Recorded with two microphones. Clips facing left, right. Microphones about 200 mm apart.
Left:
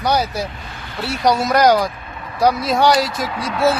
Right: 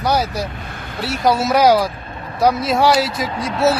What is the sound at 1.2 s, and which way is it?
Speech, centre (ahead or behind).